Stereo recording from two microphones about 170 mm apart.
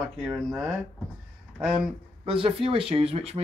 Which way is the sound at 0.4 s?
Centre (ahead or behind).